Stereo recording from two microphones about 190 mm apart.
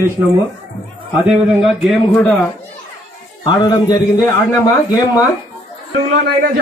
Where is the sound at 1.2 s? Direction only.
Centre (ahead or behind).